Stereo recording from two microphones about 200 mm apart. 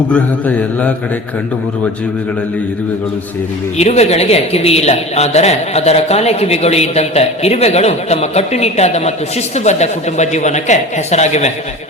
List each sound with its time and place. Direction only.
0.1 s speech: 5° left (ahead or behind)
3.8 s a man's voice: 30° left (ahead or behind)